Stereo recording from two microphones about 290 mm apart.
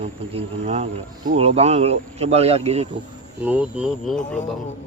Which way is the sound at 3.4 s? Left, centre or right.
Centre.